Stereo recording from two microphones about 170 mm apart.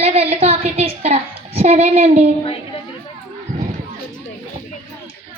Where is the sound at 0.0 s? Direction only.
40° right (ahead or behind).